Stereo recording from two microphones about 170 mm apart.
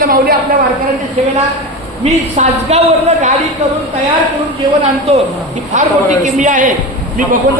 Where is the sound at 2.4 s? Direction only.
40° right (ahead or behind).